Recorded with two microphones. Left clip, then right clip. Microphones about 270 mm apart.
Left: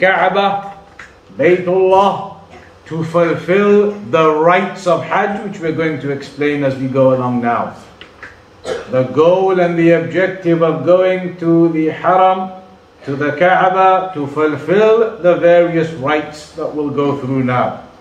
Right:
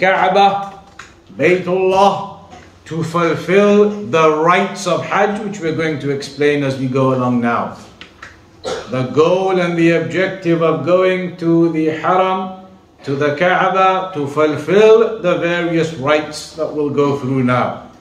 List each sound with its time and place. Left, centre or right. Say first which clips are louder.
0.0 s a man's voice: right 1 dB; centre
8.9 s a man's voice: left 3 dB; centre